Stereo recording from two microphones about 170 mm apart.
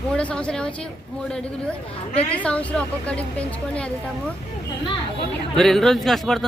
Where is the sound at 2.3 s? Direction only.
10° left (ahead or behind).